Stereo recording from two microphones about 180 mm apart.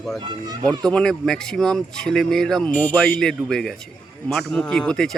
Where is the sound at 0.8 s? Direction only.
5° left (ahead or behind).